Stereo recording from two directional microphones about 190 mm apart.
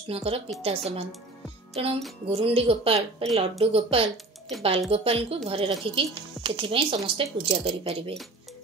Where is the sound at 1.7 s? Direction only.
30° right (ahead or behind).